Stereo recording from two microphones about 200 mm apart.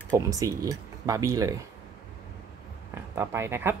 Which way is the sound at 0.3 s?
15° right (ahead or behind).